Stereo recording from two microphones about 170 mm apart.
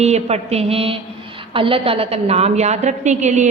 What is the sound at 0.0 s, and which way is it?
A woman's voice, 40° right (ahead or behind).